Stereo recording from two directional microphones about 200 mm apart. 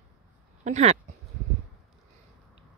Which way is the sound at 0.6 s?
35° right (ahead or behind).